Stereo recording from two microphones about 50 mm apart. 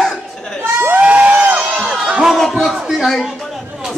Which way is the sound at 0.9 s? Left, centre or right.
Right.